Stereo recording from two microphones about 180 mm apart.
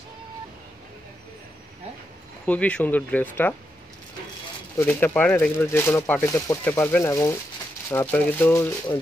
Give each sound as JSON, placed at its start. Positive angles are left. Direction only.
{"t": 2.4, "sound": "speech", "side_deg": 10}
{"t": 4.7, "sound": "speech", "side_deg": 10}